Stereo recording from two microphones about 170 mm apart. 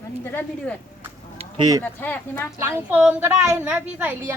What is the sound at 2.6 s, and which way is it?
A woman's voice, 15° right (ahead or behind).